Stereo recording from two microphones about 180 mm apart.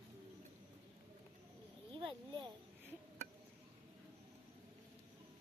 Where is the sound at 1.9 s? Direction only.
25° right (ahead or behind).